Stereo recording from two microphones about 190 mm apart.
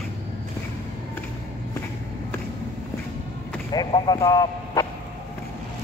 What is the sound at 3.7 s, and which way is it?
Speech, 20° left (ahead or behind).